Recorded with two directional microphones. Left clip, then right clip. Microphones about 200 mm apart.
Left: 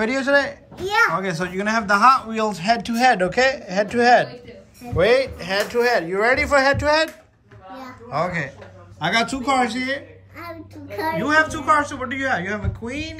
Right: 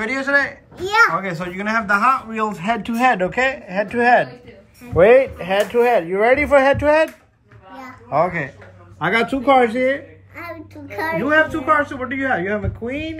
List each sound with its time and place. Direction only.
0.1 s a child's voice: 25° left (ahead or behind)
0.7 s speech: centre (ahead or behind)
1.1 s speech: 15° left (ahead or behind)
9.0 s a child's voice: 5° right (ahead or behind)
12.4 s speech: 10° right (ahead or behind)